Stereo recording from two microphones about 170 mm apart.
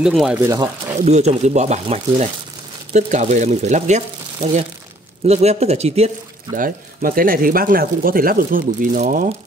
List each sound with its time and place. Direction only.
0.0 s speech: 5° right (ahead or behind)
0.4 s speech: 20° right (ahead or behind)
1.0 s speech: 40° right (ahead or behind)
6.6 s speech: 55° right (ahead or behind)